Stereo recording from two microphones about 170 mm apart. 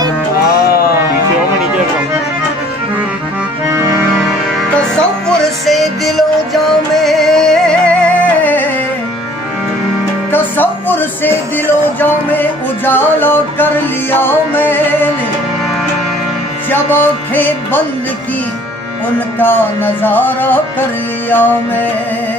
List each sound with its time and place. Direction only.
0.7 s music: 65° left (ahead or behind)
4.7 s music: 5° left (ahead or behind)
10.3 s music: 10° left (ahead or behind)
16.7 s music: 10° left (ahead or behind)
19.3 s music: 10° left (ahead or behind)